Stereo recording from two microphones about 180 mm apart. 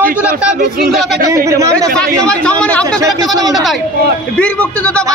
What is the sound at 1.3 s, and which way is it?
Speech, 15° right (ahead or behind).